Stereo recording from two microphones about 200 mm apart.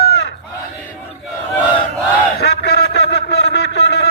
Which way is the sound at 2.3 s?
55° left (ahead or behind).